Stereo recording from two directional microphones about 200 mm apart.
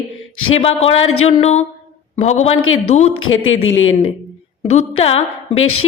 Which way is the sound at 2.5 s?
90° left.